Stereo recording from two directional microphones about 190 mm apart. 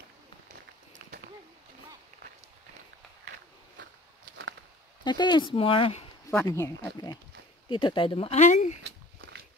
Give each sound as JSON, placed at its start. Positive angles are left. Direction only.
{"t": 5.0, "sound": "speech", "side_deg": 25}
{"t": 6.3, "sound": "speech", "side_deg": 15}
{"t": 8.8, "sound": "a sound", "side_deg": -75}